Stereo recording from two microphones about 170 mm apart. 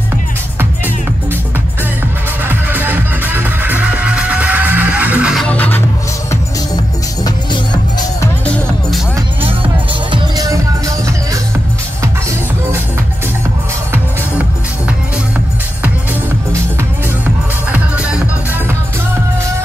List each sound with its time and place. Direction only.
2.4 s music: 10° right (ahead or behind); by 5.8 s 10° left (ahead or behind)
10.1 s music: 20° right (ahead or behind)
17.6 s music: 10° right (ahead or behind)